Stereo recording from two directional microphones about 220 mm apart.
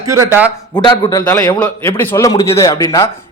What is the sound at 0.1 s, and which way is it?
Speech, 10° right (ahead or behind).